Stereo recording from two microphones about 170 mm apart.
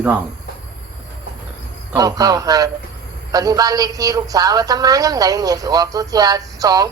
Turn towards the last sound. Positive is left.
turn(degrees=-20)  # may be behind; listen again after turning